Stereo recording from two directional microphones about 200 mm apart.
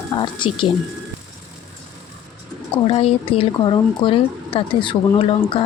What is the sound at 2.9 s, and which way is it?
Speech, 30° left (ahead or behind).